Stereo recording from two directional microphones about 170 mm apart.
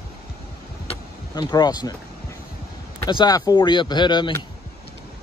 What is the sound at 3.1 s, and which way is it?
Speech, 25° left (ahead or behind).